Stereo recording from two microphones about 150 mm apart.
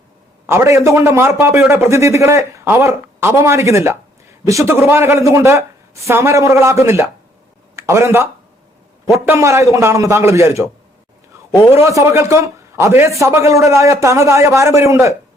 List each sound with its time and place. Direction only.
0.4 s a man's voice: 20° right (ahead or behind)
11.8 s a man's voice: 20° right (ahead or behind)